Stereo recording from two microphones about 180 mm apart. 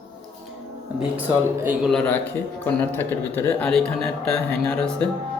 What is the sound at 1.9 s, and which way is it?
A man's voice, 5° left (ahead or behind).